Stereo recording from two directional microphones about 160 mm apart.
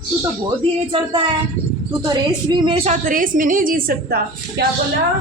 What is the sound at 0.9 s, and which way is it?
A woman's voice, 35° right (ahead or behind).